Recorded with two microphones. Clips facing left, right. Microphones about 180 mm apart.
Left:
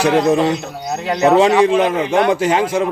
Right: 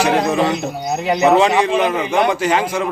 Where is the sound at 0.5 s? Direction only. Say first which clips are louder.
Right 2 dB; 15° right (ahead or behind).